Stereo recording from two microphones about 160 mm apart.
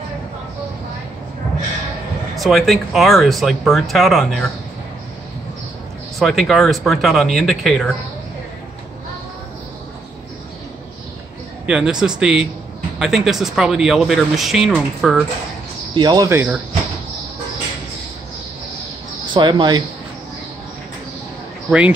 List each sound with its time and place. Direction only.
2.3 s speech: centre (ahead or behind)
6.1 s speech: centre (ahead or behind)
11.6 s speech: 5° right (ahead or behind)
15.9 s speech: 30° right (ahead or behind)
16.3 s speech: 15° right (ahead or behind)
19.3 s speech: 30° right (ahead or behind)
21.6 s speech: 10° right (ahead or behind)